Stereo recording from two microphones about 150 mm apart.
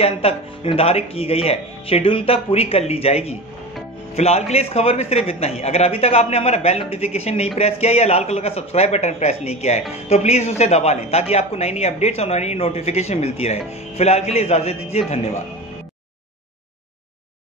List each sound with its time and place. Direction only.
0.0 s a woman's voice: 40° left (ahead or behind)